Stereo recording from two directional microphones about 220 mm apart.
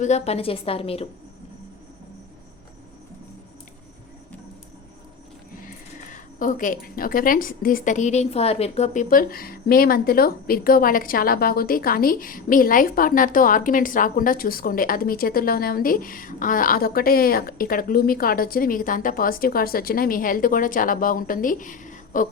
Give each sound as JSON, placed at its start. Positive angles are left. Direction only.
{"t": 0.0, "sound": "a woman's voice", "side_deg": 30}
{"t": 5.6, "sound": "a woman's voice", "side_deg": 40}